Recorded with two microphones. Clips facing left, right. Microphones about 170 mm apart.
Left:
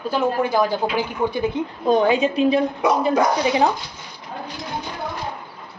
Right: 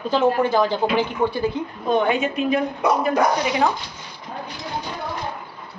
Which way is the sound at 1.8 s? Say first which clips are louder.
Left 3 dB; 30° left (ahead or behind).